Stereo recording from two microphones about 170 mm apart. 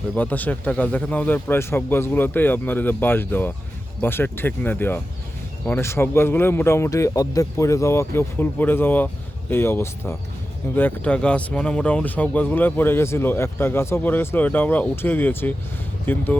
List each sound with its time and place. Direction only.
0.2 s speech: 10° left (ahead or behind)